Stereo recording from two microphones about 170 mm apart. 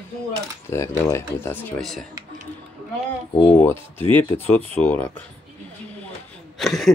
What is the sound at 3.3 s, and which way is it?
Speech, 25° left (ahead or behind).